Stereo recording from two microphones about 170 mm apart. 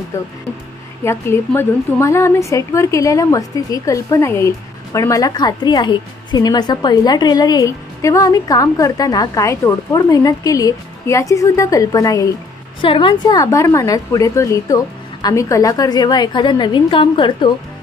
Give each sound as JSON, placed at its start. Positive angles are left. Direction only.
{"t": 0.1, "sound": "a woman's voice", "side_deg": 15}